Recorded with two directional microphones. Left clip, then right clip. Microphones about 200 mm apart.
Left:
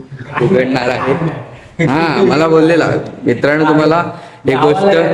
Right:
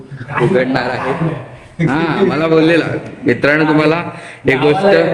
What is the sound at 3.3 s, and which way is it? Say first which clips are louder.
Speech: left 1 dB; centre (ahead or behind).